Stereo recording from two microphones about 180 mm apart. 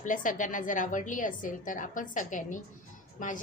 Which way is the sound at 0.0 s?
45° left (ahead or behind).